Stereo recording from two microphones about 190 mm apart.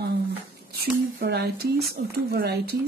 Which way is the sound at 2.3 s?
60° right (ahead or behind).